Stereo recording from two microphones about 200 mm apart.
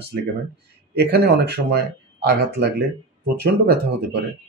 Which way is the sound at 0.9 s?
55° right (ahead or behind).